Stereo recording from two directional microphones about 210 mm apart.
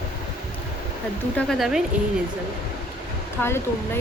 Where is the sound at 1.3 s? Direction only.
Centre (ahead or behind).